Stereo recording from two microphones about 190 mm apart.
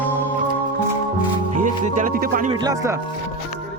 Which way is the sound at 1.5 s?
45° right (ahead or behind).